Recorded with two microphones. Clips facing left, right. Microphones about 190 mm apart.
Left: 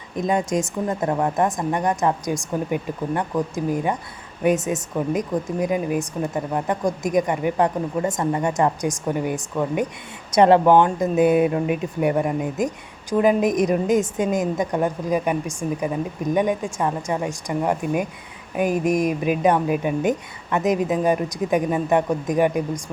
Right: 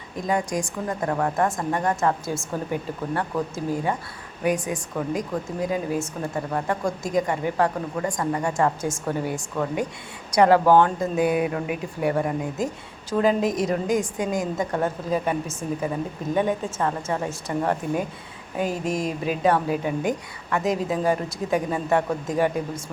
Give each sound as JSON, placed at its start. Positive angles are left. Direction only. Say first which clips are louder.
{"t": 0.2, "sound": "a woman's voice", "louder": "left 3 dB", "side_deg": 20}